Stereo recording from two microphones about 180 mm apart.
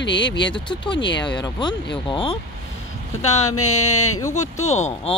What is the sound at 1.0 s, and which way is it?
Speech, 80° left.